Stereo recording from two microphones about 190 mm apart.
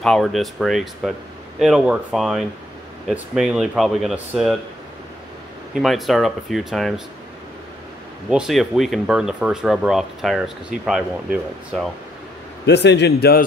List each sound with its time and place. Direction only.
0.0 s speech: centre (ahead or behind)
5.8 s speech: centre (ahead or behind)
8.3 s speech: centre (ahead or behind)
12.6 s a man's voice: 65° left (ahead or behind)